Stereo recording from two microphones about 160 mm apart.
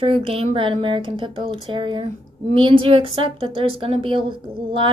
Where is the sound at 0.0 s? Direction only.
35° right (ahead or behind).